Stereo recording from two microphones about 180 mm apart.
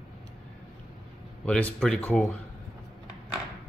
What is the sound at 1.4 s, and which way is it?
Speech, 5° left (ahead or behind).